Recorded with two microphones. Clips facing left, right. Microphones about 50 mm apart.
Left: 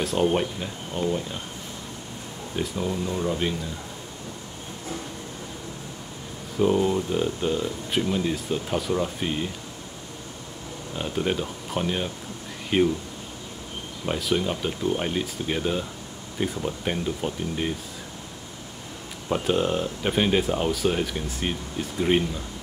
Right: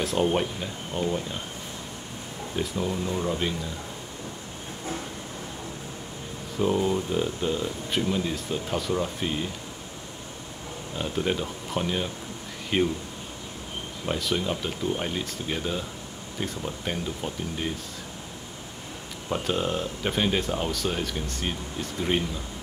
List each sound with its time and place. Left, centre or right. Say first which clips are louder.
0.0 s speech: left 1 dB; centre
2.5 s speech: left 1 dB; centre
6.6 s speech: left 3 dB; centre
11.0 s speech: left 1 dB; centre
14.0 s speech: left 2 dB; centre
19.2 s speech: left 4 dB; centre